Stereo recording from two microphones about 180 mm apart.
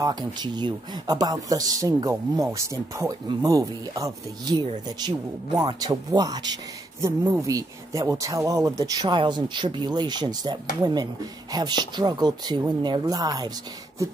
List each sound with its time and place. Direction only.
0.0 s speech: 25° right (ahead or behind)